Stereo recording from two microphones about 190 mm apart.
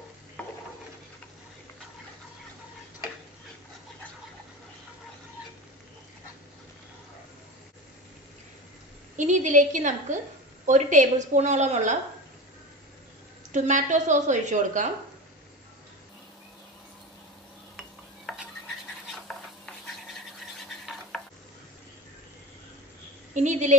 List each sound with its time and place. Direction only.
0.4 s stir: 5° left (ahead or behind)
9.1 s a woman's voice: 40° right (ahead or behind)
13.5 s a woman's voice: 40° right (ahead or behind)
18.2 s stir: 5° right (ahead or behind)
19.2 s a sound: centre (ahead or behind)
23.3 s a woman's voice: 40° right (ahead or behind)